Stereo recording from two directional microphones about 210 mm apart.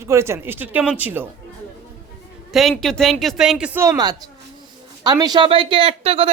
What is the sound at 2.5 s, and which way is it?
Speech, centre (ahead or behind).